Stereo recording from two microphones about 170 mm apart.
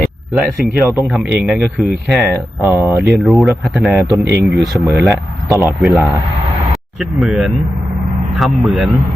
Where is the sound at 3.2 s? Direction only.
Centre (ahead or behind).